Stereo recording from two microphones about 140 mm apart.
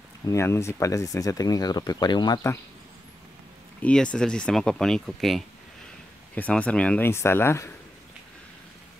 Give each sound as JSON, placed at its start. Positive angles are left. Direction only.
{"t": 0.3, "sound": "speech", "side_deg": 20}
{"t": 3.8, "sound": "speech", "side_deg": 5}